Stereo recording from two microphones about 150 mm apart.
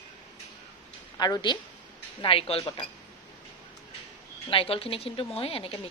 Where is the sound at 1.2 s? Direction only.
30° left (ahead or behind).